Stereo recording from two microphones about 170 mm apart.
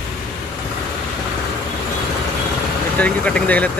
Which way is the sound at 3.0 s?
5° left (ahead or behind).